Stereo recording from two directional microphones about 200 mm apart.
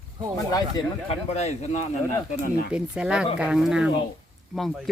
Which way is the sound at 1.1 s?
30° left (ahead or behind).